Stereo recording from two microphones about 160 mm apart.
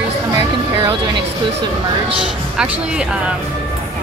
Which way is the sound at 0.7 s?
35° right (ahead or behind).